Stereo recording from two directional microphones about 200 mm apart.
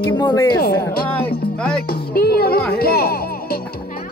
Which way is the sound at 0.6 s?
50° left (ahead or behind).